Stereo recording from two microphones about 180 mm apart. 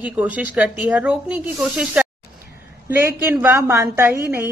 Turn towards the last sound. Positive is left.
turn(degrees=-15)  # may be behind; listen again after turning